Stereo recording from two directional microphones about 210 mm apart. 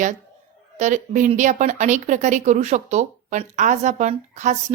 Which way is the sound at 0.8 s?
35° right (ahead or behind).